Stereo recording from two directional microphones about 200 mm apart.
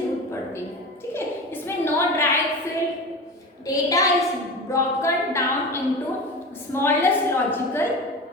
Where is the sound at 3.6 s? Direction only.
15° left (ahead or behind).